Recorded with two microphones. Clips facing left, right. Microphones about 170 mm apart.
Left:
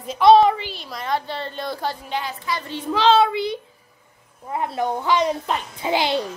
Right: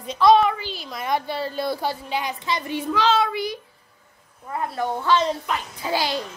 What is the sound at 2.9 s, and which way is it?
A child's voice, 30° left (ahead or behind).